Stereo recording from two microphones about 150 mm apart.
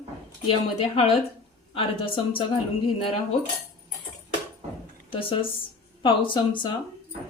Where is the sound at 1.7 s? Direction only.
35° left (ahead or behind).